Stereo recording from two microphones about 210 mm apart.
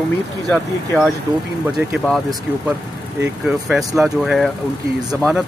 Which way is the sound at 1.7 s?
Centre (ahead or behind).